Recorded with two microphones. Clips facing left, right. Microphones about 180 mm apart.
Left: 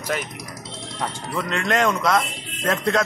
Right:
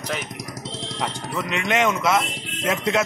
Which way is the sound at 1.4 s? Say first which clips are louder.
Left 1 dB; 5° right (ahead or behind).